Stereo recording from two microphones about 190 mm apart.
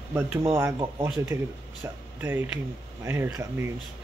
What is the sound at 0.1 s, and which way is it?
Speech, 15° right (ahead or behind).